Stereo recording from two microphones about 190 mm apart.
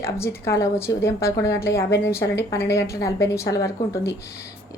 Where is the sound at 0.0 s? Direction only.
15° left (ahead or behind).